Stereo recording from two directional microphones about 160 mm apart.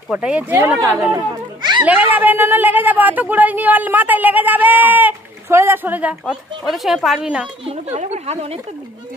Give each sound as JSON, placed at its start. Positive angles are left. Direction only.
{"t": 0.1, "sound": "speech", "side_deg": -5}
{"t": 1.1, "sound": "a sound", "side_deg": -25}
{"t": 1.8, "sound": "speech", "side_deg": -10}
{"t": 7.6, "sound": "speech", "side_deg": -45}